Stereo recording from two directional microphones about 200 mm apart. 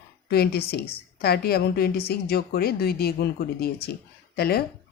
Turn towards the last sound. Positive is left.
turn(degrees=50)  # may be behind; listen again after turning